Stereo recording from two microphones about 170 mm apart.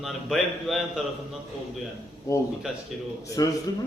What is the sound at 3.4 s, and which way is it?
Speech, 20° left (ahead or behind).